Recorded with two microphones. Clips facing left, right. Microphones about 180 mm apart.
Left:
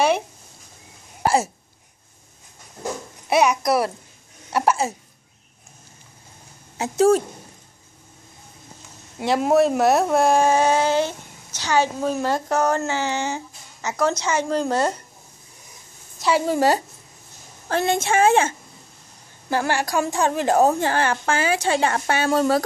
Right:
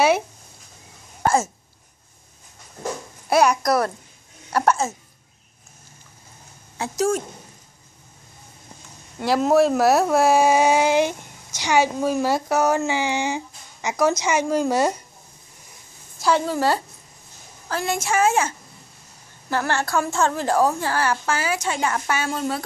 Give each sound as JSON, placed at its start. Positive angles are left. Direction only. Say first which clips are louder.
{"t": 3.3, "sound": "a child's voice", "louder": "even", "side_deg": 0}
{"t": 6.8, "sound": "a woman's voice", "louder": "left 5 dB", "side_deg": 30}
{"t": 9.2, "sound": "speech", "louder": "even", "side_deg": 0}
{"t": 16.2, "sound": "a woman's voice", "louder": "even", "side_deg": 5}
{"t": 16.4, "sound": "a woman's voice", "louder": "left 3 dB", "side_deg": 15}
{"t": 19.7, "sound": "a woman's voice", "louder": "left 1 dB", "side_deg": 15}